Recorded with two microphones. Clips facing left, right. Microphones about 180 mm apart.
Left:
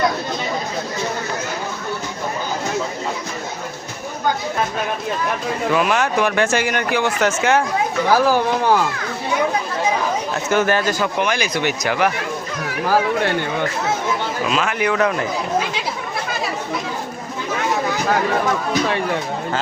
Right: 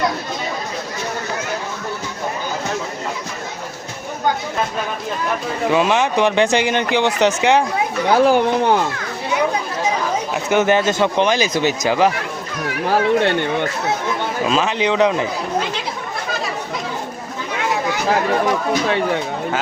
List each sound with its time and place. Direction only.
5.7 s speech: 20° right (ahead or behind)
10.5 s speech: 20° right (ahead or behind)
14.4 s speech: 25° right (ahead or behind)